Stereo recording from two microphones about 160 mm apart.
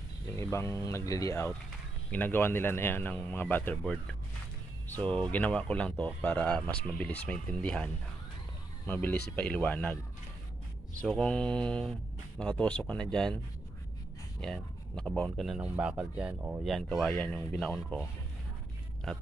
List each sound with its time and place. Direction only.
0.4 s speech: 15° left (ahead or behind)
11.0 s speech: 5° left (ahead or behind)
14.4 s speech: 5° left (ahead or behind)
16.6 s speech: centre (ahead or behind)